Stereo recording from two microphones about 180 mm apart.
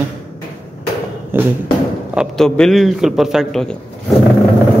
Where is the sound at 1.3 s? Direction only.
15° right (ahead or behind).